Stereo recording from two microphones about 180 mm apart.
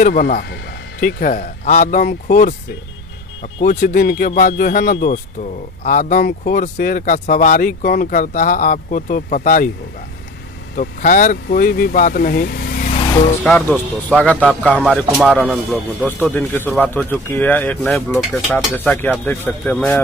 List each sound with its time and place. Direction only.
0.0 s speech: 50° left (ahead or behind)
1.0 s speech: 45° left (ahead or behind)
3.6 s speech: 50° left (ahead or behind)
10.8 s speech: 50° left (ahead or behind)
13.4 s speech: 10° left (ahead or behind)